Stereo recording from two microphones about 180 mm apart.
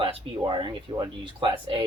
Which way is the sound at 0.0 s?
30° right (ahead or behind).